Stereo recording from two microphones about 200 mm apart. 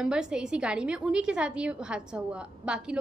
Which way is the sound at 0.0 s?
5° right (ahead or behind).